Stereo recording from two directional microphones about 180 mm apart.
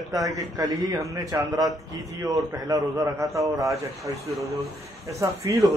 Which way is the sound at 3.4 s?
Centre (ahead or behind).